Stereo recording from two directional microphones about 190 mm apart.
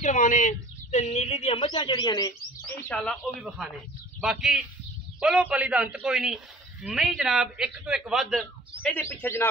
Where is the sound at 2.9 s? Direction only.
Centre (ahead or behind).